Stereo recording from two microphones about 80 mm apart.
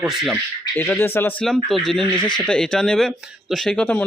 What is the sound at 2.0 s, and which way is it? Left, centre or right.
Speech, left.